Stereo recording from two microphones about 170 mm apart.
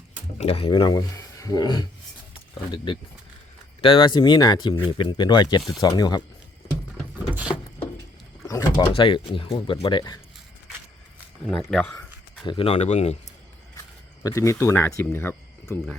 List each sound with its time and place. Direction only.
0.3 s speech: 35° left (ahead or behind)
7.3 s a sound: 5° right (ahead or behind)
8.4 s sliding door: 20° left (ahead or behind)
8.8 s speech: 30° left (ahead or behind)
11.4 s speech: 5° left (ahead or behind)
12.5 s speech: 35° left (ahead or behind)
14.3 s speech: 20° left (ahead or behind)